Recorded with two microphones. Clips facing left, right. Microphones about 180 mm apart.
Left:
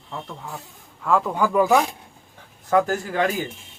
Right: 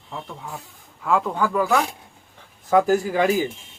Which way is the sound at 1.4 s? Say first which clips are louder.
Left 6 dB; 15° left (ahead or behind).